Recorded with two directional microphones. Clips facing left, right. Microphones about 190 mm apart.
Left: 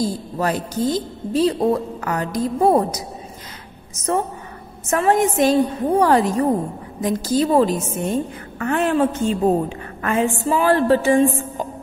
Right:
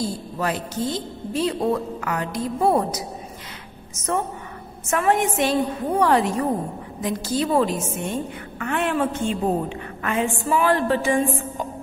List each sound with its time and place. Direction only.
0.0 s a woman's voice: 40° left (ahead or behind)
4.8 s a woman's voice: 35° left (ahead or behind)